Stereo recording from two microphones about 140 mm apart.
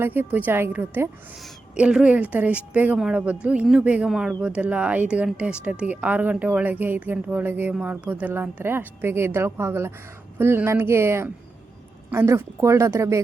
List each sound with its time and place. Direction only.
0.0 s speech: 15° right (ahead or behind)